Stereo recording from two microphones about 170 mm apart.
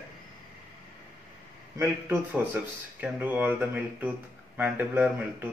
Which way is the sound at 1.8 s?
10° right (ahead or behind).